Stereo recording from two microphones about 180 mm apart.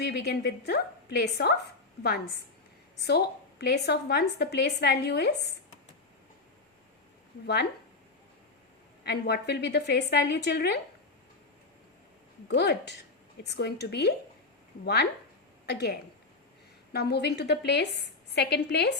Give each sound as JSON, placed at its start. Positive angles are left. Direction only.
{"t": 0.0, "sound": "a woman's voice", "side_deg": 65}
{"t": 3.0, "sound": "a woman's voice", "side_deg": 65}
{"t": 7.4, "sound": "a woman's voice", "side_deg": 65}
{"t": 9.0, "sound": "a woman's voice", "side_deg": 65}
{"t": 12.5, "sound": "a woman's voice", "side_deg": 70}
{"t": 15.6, "sound": "a woman's voice", "side_deg": 65}